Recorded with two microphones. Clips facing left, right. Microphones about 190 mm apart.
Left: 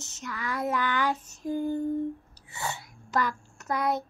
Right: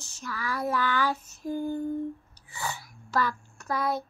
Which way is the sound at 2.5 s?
25° left (ahead or behind).